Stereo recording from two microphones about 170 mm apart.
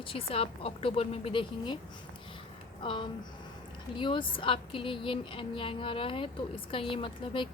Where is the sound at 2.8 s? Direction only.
30° left (ahead or behind).